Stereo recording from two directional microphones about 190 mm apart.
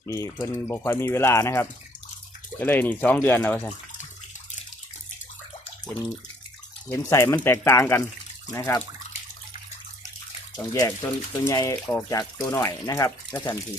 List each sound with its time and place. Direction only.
0.0 s speech: 15° left (ahead or behind)
6.9 s speech: 15° left (ahead or behind)
10.6 s speech: 20° left (ahead or behind)